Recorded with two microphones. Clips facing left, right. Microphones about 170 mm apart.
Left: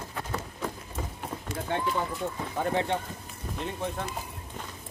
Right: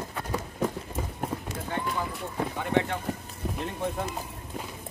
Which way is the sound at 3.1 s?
70° right (ahead or behind).